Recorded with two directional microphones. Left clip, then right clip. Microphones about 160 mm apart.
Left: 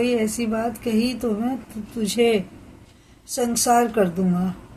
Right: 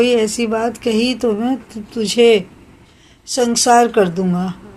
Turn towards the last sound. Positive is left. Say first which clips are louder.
# right 6 dB
turn(degrees=-30)  # may be behind; listen again after turning